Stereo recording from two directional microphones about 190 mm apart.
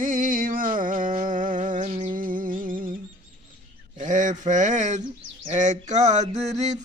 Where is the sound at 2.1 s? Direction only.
45° right (ahead or behind).